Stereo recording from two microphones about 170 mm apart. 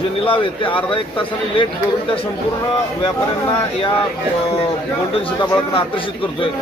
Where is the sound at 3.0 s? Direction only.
25° left (ahead or behind).